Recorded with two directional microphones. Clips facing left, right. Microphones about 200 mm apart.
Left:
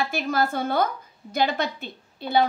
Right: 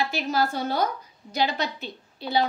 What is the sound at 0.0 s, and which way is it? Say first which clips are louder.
Speech: left 1 dB; 50° left (ahead or behind).